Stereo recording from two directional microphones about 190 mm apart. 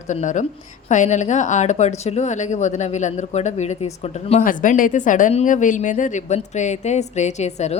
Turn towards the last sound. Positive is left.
turn(degrees=35)  # may be behind; listen again after turning